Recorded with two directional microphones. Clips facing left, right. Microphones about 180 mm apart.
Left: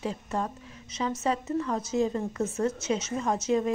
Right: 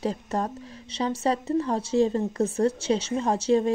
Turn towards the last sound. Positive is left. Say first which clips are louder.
# right 4 dB
turn(degrees=-30)  # may be behind; listen again after turning